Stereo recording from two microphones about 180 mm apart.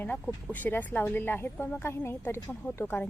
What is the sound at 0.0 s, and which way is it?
Speech, 10° left (ahead or behind).